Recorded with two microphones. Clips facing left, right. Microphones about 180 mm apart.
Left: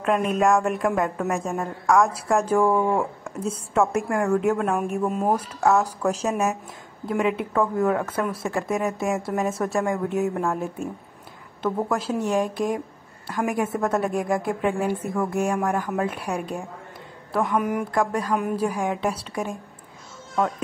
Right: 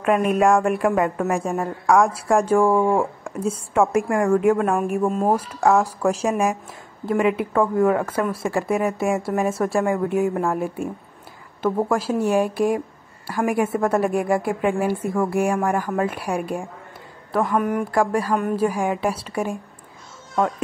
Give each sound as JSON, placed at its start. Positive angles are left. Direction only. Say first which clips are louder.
{"t": 0.0, "sound": "a woman's voice", "louder": "right 3 dB", "side_deg": -5}
{"t": 2.7, "sound": "speech", "louder": "right 3 dB", "side_deg": -30}
{"t": 3.3, "sound": "a woman's voice", "louder": "right 3 dB", "side_deg": -10}
{"t": 17.3, "sound": "a woman's voice", "louder": "right 2 dB", "side_deg": 0}